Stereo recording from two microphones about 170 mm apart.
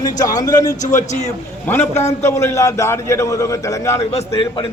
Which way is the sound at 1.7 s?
10° left (ahead or behind).